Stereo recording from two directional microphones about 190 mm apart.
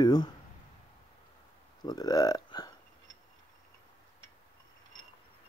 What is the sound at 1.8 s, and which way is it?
Speech, 20° left (ahead or behind).